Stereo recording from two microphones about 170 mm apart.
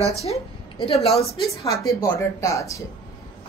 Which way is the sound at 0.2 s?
35° left (ahead or behind).